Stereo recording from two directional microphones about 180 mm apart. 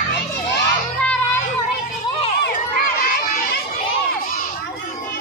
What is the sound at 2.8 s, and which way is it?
Children playing, 45° left (ahead or behind).